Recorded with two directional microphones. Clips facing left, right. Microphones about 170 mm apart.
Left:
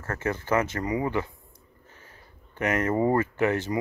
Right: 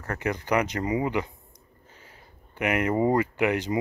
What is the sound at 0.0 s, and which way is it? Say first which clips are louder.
Speech: even; 15° right (ahead or behind).